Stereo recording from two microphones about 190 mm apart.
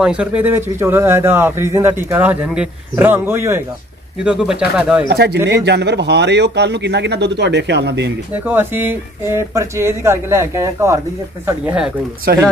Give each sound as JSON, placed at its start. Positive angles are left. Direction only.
{"t": 0.0, "sound": "speech", "side_deg": -5}
{"t": 5.1, "sound": "speech", "side_deg": -60}
{"t": 8.3, "sound": "speech", "side_deg": -10}
{"t": 12.3, "sound": "speech", "side_deg": -55}